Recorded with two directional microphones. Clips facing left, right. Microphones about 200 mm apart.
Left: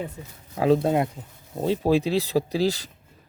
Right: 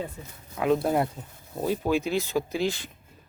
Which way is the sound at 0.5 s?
30° left (ahead or behind).